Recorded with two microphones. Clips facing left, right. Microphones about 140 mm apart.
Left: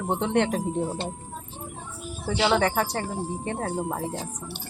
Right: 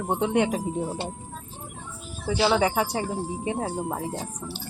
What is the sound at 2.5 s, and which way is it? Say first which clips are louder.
Speech: right 1 dB; 10° right (ahead or behind).